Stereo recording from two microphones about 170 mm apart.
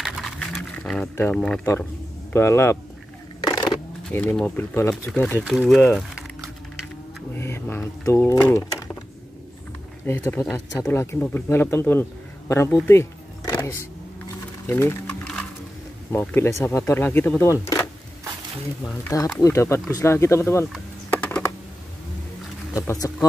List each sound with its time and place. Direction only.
0.0 s wild animals: centre (ahead or behind)
1.1 s speech: 10° left (ahead or behind)
2.3 s speech: 15° left (ahead or behind)
3.4 s a sound: 25° left (ahead or behind)
4.1 s speech: 10° left (ahead or behind)
5.4 s speech: 5° right (ahead or behind)
7.3 s speech: 15° left (ahead or behind)
10.0 s a man's voice: 15° left (ahead or behind)
16.1 s speech: 15° left (ahead or behind)
19.1 s speech: 20° left (ahead or behind)
20.7 s a sound: 10° left (ahead or behind)
22.8 s speech: 15° left (ahead or behind)